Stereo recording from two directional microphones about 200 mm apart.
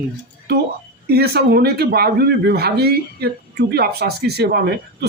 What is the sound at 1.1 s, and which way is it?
Speech, 50° right (ahead or behind).